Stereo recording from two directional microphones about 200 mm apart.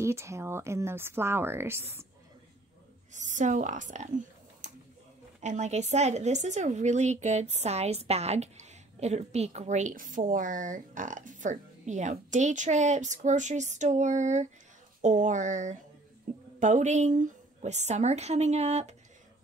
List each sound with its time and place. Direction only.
0.0 s speech: 15° right (ahead or behind)
3.1 s a woman's voice: 35° right (ahead or behind)
5.4 s a woman's voice: 35° right (ahead or behind)